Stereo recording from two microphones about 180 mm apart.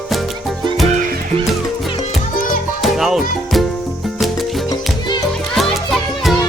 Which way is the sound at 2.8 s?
Centre (ahead or behind).